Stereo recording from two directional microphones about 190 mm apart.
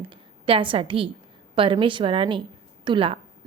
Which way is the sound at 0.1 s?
25° right (ahead or behind).